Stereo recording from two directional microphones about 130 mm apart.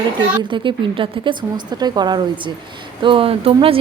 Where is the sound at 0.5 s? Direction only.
40° right (ahead or behind).